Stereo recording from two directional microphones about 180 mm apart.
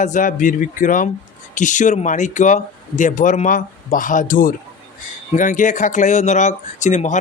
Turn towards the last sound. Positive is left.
turn(degrees=40)  # may be behind; listen again after turning